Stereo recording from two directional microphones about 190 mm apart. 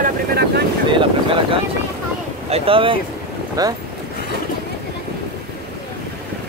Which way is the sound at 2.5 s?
30° right (ahead or behind).